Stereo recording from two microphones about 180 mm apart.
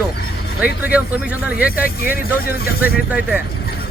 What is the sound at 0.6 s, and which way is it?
Speech, 10° right (ahead or behind).